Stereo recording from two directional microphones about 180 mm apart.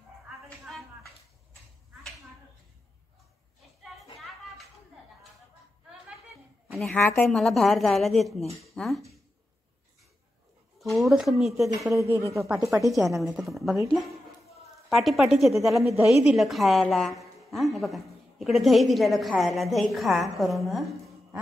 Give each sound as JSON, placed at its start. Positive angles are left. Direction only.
{"t": 3.8, "sound": "a sound", "side_deg": 0}
{"t": 6.7, "sound": "a sound", "side_deg": 0}
{"t": 7.0, "sound": "a woman's voice", "side_deg": 10}
{"t": 10.8, "sound": "speech", "side_deg": 0}
{"t": 11.9, "sound": "speech", "side_deg": -15}
{"t": 12.9, "sound": "a woman's voice", "side_deg": 0}